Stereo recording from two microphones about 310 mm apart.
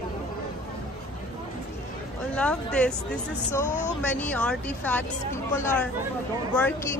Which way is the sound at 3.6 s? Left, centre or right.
Left.